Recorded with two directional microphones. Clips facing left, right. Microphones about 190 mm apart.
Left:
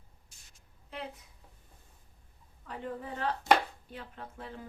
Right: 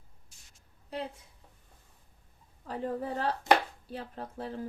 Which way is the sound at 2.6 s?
35° right (ahead or behind).